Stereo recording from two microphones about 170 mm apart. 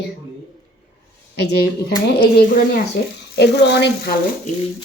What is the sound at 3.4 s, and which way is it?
Speech, 80° left.